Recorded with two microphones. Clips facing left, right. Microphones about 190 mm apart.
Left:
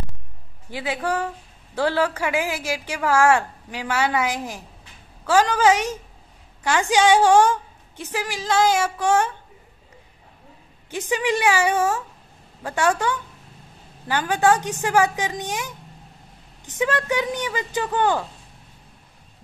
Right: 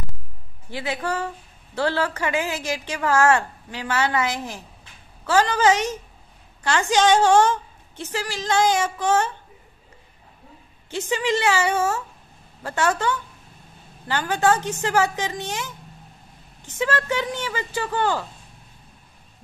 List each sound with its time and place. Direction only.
0.7 s a woman's voice: 10° left (ahead or behind)
10.9 s a woman's voice: 15° left (ahead or behind)